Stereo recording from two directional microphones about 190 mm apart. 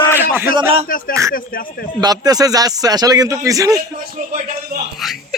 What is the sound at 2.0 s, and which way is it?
A man's voice, 20° right (ahead or behind).